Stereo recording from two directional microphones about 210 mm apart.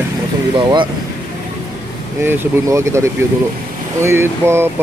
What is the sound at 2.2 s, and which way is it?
Speech, 10° right (ahead or behind).